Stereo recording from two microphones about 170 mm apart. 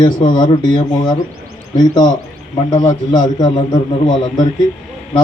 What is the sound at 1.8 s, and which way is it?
Speech, 25° left (ahead or behind).